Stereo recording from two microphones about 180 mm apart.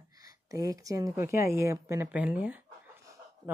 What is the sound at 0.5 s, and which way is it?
Speech, 20° right (ahead or behind).